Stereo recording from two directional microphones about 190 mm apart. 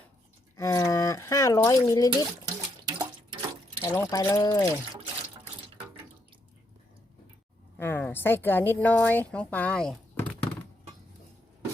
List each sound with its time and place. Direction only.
0.5 s a sound: 15° left (ahead or behind)
2.5 s water: 20° right (ahead or behind)
3.8 s a woman's voice: 15° left (ahead or behind)
7.8 s a woman's voice: 10° left (ahead or behind)